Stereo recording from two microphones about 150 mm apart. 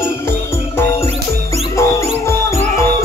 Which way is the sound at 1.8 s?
20° left (ahead or behind).